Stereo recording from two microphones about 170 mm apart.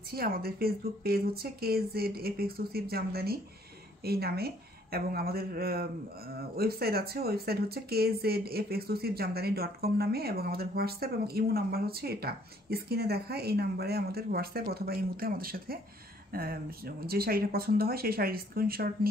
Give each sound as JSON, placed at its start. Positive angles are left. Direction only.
{"t": 0.1, "sound": "a woman's voice", "side_deg": -60}